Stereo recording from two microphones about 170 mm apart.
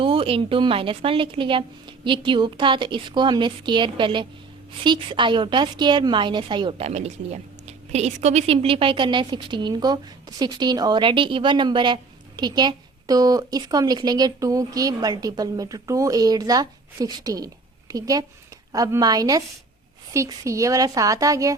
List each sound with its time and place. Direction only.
0.0 s a woman's voice: 30° right (ahead or behind)